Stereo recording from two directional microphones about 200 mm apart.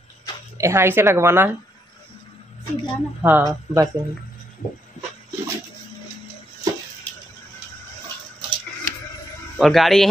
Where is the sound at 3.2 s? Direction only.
10° right (ahead or behind).